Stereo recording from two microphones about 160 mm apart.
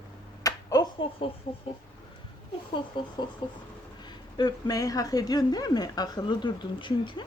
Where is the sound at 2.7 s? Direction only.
30° left (ahead or behind).